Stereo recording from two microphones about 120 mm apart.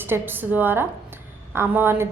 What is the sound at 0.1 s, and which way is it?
A woman's voice, 15° right (ahead or behind).